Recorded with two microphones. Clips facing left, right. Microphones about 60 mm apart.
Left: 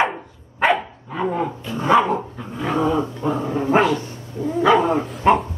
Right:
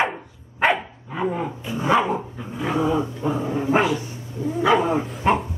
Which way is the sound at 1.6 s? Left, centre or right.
Centre.